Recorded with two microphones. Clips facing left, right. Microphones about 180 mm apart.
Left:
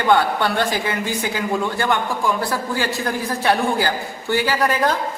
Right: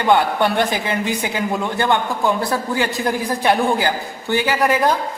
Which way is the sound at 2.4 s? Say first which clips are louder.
Right 2 dB; 20° right (ahead or behind).